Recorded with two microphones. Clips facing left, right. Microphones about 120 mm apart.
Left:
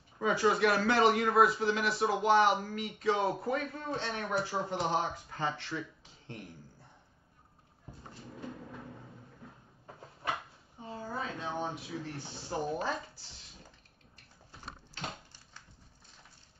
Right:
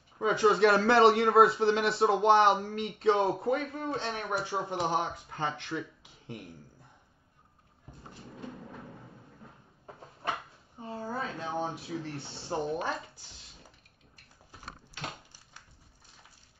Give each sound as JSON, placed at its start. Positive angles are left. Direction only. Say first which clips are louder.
{"t": 0.2, "sound": "a man's voice", "louder": "right 4 dB", "side_deg": -25}
{"t": 10.8, "sound": "a sound", "louder": "right 3 dB", "side_deg": -35}
{"t": 11.6, "sound": "a man's voice", "louder": "right 2 dB", "side_deg": -30}